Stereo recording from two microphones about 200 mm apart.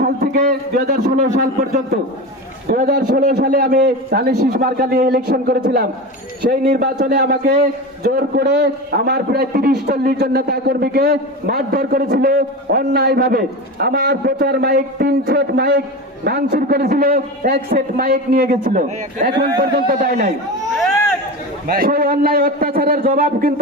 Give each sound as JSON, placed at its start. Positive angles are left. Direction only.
{"t": 0.0, "sound": "a sound", "side_deg": -50}
{"t": 2.6, "sound": "a man's voice", "side_deg": -40}
{"t": 21.7, "sound": "a man's voice", "side_deg": -45}